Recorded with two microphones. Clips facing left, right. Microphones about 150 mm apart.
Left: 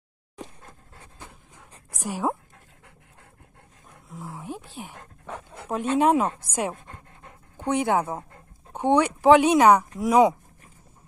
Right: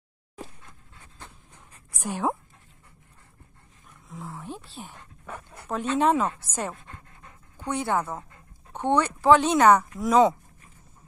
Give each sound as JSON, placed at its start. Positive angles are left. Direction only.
{"t": 0.6, "sound": "pant", "side_deg": 40}
{"t": 2.0, "sound": "speech", "side_deg": 0}
{"t": 2.5, "sound": "dog", "side_deg": 65}
{"t": 4.1, "sound": "speech", "side_deg": 10}
{"t": 5.2, "sound": "dog", "side_deg": 25}
{"t": 5.7, "sound": "speech", "side_deg": 10}